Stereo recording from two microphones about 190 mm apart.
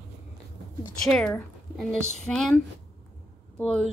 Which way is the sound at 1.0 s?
5° left (ahead or behind).